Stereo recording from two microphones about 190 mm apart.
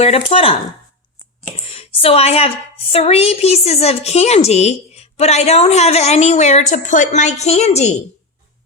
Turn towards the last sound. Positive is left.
turn(degrees=35)  # may be behind; listen again after turning